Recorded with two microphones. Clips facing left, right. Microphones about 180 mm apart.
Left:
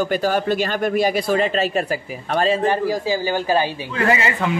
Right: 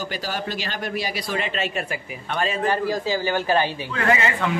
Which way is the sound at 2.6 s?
15° left (ahead or behind).